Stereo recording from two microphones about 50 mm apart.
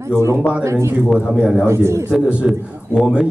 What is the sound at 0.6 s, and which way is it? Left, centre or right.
Speech, right.